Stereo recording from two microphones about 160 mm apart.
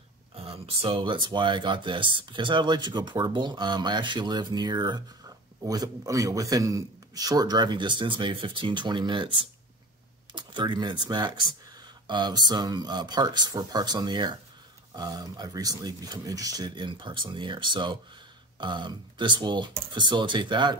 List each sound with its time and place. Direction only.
0.4 s speech: 40° right (ahead or behind)